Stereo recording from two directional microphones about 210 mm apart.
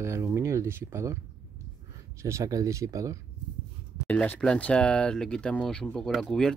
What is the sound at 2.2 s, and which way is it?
Speech, 15° right (ahead or behind).